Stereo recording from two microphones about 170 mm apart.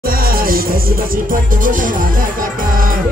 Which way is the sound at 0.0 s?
60° right (ahead or behind).